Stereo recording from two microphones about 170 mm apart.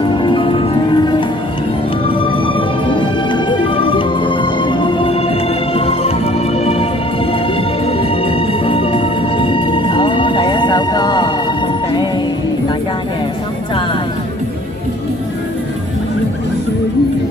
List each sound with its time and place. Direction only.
0.0 s music: 30° left (ahead or behind)